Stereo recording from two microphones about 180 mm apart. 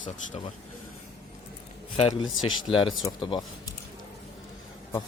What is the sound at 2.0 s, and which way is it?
A man's voice, 30° left (ahead or behind).